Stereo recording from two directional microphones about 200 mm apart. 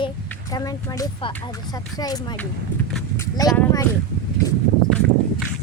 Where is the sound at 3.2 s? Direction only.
20° left (ahead or behind).